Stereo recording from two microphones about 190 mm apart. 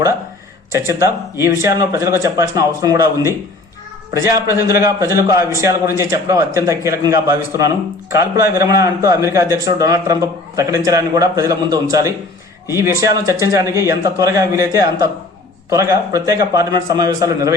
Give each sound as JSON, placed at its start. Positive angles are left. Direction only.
{"t": 0.7, "sound": "a man's voice", "side_deg": -15}
{"t": 4.9, "sound": "a man's voice", "side_deg": -15}